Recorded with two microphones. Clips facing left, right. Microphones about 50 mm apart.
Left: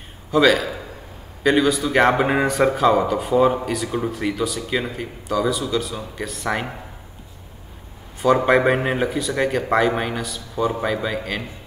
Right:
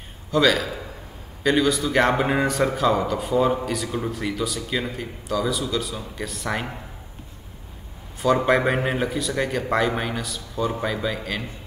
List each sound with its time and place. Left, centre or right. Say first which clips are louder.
0.3 s a man's voice: left 3 dB; centre
8.2 s speech: left 3 dB; centre